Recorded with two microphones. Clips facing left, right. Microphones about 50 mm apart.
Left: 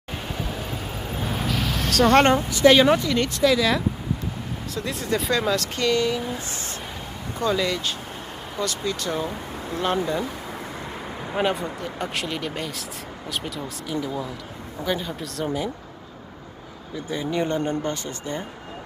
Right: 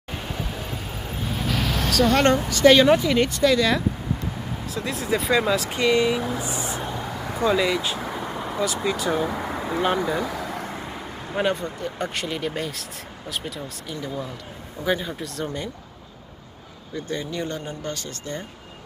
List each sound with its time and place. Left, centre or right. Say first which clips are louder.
1.9 s speech: left 2 dB; left
2.2 s speech: even; centre
2.6 s speech: right 1 dB; centre
2.9 s speech: right 2 dB; centre
3.3 s speech: even; centre
9.2 s speech: right 4 dB; right
9.8 s speech: even; centre
10.9 s a sound: left 1 dB; centre
11.8 s speech: right 1 dB; centre
16.9 s speech: even; centre
17.3 s speech: left 6 dB; left